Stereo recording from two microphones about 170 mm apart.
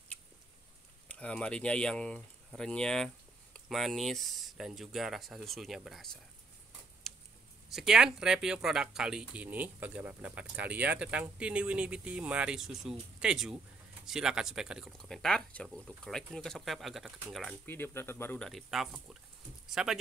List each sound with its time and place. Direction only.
1.0 s speech: 5° left (ahead or behind)
7.0 s a sound: centre (ahead or behind)
7.7 s speech: 5° right (ahead or behind)
17.6 s speech: 15° left (ahead or behind)
18.5 s speech: centre (ahead or behind)